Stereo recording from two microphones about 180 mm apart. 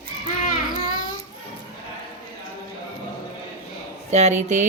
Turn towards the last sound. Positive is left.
turn(degrees=-40)  # may be behind; listen again after turning